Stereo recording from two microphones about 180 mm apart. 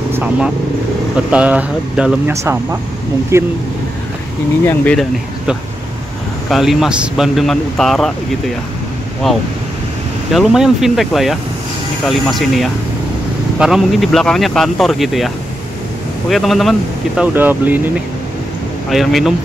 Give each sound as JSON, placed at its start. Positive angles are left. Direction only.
{"t": 0.1, "sound": "vehicle", "side_deg": -10}
{"t": 1.3, "sound": "speech", "side_deg": -5}
{"t": 4.6, "sound": "speech", "side_deg": 5}
{"t": 6.5, "sound": "speech", "side_deg": 0}
{"t": 9.2, "sound": "speech", "side_deg": 0}
{"t": 17.2, "sound": "speech", "side_deg": -10}